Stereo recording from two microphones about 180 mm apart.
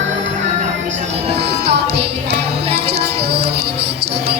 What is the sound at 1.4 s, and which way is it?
Music, 65° right (ahead or behind).